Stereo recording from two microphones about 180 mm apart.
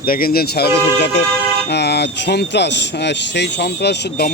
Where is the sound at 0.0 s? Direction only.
55° left (ahead or behind).